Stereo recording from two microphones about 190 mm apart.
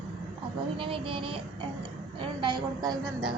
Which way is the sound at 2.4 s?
25° right (ahead or behind).